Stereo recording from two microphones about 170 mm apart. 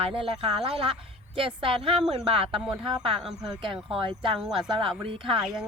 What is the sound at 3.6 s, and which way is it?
Speech, 30° right (ahead or behind).